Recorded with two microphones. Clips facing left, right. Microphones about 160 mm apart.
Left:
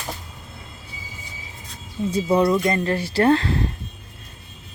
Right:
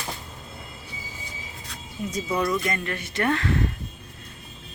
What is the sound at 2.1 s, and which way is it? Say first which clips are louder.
Speech: left 7 dB; 30° left (ahead or behind).